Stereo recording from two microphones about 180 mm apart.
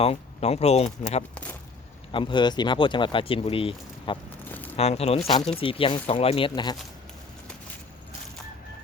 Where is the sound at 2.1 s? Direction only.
25° left (ahead or behind).